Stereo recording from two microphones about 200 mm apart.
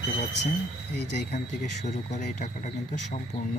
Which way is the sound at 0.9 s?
60° left (ahead or behind).